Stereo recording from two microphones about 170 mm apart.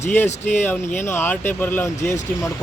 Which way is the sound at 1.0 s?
15° left (ahead or behind).